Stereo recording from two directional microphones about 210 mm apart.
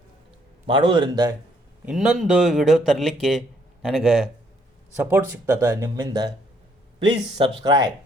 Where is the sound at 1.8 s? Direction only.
Centre (ahead or behind).